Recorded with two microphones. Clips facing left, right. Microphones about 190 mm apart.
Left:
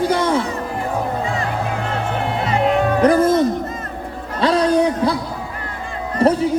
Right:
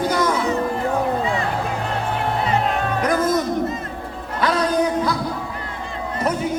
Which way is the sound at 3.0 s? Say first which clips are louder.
Left 5 dB; 30° left (ahead or behind).